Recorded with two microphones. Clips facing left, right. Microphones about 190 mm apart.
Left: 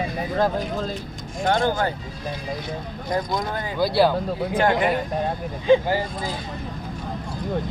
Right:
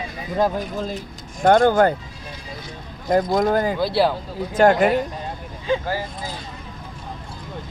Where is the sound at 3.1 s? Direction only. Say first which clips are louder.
Right 8 dB; 50° right (ahead or behind).